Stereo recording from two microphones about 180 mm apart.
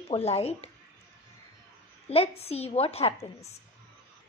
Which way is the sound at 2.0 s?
35° left (ahead or behind).